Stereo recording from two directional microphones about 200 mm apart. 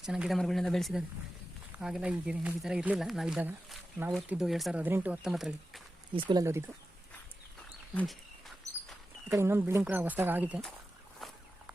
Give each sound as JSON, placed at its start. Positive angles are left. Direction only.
{"t": 0.0, "sound": "speech", "side_deg": -5}
{"t": 6.1, "sound": "speech", "side_deg": -20}
{"t": 7.9, "sound": "a sound", "side_deg": 0}
{"t": 9.3, "sound": "speech", "side_deg": -10}
{"t": 11.2, "sound": "fowl", "side_deg": 0}